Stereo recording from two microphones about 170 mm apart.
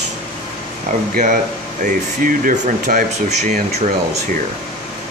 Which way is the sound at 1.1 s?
50° right (ahead or behind).